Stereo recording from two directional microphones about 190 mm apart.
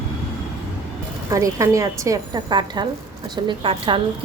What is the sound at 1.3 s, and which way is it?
A woman's voice, 15° right (ahead or behind).